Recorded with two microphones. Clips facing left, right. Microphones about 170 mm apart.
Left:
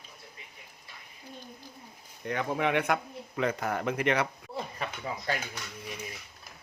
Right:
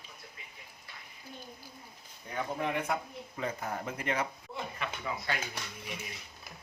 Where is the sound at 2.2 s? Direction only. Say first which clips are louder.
Left 5 dB; 80° left.